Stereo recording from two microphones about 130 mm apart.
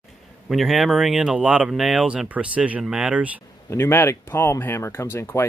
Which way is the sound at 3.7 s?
20° left (ahead or behind).